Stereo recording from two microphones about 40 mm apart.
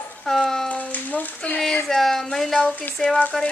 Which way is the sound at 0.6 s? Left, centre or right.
Left.